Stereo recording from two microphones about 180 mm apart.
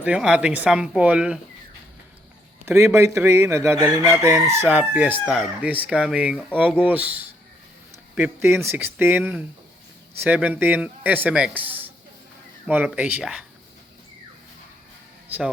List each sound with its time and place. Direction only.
0.0 s speech: 5° right (ahead or behind)
2.6 s speech: 15° right (ahead or behind)